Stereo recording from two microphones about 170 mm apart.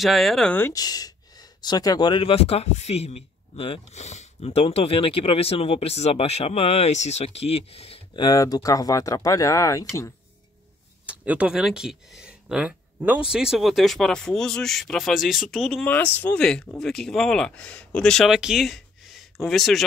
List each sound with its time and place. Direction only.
0.0 s speech: centre (ahead or behind); by 9.8 s 20° left (ahead or behind)
11.1 s speech: 5° right (ahead or behind)